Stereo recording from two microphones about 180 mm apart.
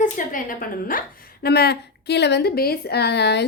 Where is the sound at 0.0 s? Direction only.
50° left (ahead or behind).